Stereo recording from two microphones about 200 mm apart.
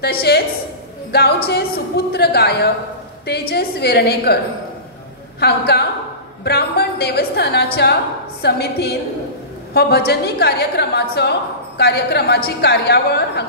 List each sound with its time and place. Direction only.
0.0 s a woman's voice: 55° left (ahead or behind)
5.4 s a woman's voice: 55° left (ahead or behind)